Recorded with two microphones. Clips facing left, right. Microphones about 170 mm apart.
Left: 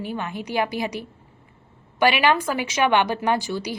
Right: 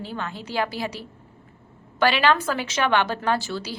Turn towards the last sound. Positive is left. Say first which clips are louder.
# left 2 dB
turn(degrees=15)  # may be behind; listen again after turning